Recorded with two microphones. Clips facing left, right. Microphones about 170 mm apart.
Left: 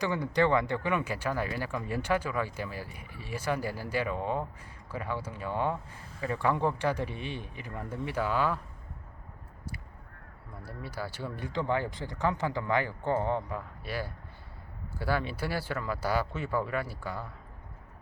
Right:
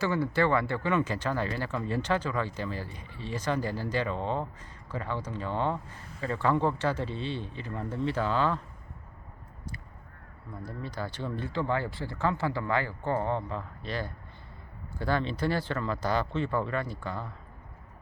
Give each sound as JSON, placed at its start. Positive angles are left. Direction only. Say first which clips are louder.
{"t": 0.0, "sound": "speech", "louder": "right 1 dB", "side_deg": 15}
{"t": 10.6, "sound": "speech", "louder": "right 2 dB", "side_deg": 10}